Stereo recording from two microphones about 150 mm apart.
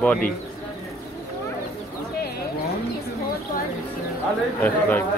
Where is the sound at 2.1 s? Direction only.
90° left.